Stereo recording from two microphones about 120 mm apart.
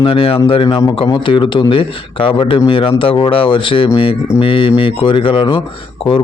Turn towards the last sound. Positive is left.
turn(degrees=45)  # may be behind; listen again after turning